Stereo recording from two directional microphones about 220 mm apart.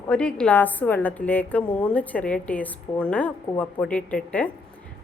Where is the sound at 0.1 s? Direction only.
5° left (ahead or behind).